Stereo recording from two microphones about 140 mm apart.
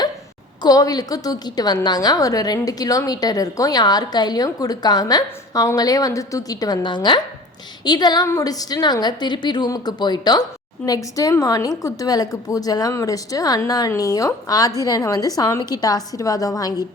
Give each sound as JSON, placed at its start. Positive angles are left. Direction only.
{"t": 0.6, "sound": "a woman's voice", "side_deg": 25}